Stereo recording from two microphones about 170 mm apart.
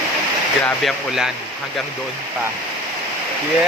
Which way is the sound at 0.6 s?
Centre (ahead or behind).